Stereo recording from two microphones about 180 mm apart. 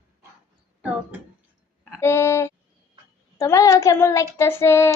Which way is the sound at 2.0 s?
15° left (ahead or behind).